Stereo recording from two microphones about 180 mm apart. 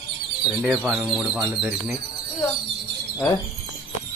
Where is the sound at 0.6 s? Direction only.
5° right (ahead or behind).